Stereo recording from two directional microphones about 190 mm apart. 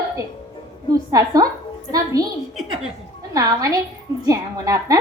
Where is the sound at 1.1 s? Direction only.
20° right (ahead or behind).